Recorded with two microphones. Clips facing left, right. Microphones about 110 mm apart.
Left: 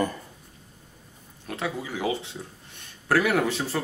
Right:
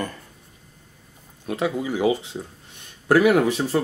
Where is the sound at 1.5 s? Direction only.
15° right (ahead or behind).